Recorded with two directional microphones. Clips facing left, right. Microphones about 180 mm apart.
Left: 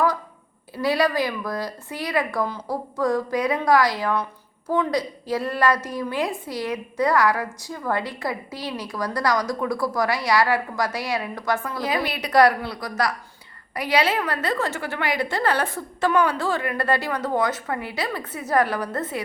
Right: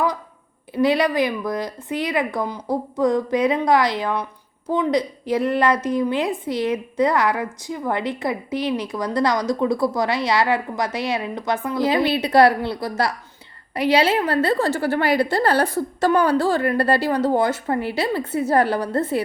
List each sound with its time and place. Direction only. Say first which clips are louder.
0.7 s a woman's voice: right 3 dB; 20° right (ahead or behind)